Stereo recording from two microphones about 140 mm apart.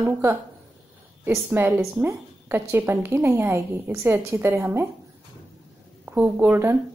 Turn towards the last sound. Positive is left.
turn(degrees=-15)  # may be behind; listen again after turning